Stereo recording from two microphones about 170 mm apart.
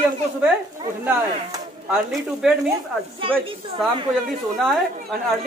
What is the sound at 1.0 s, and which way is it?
Speech, 10° right (ahead or behind).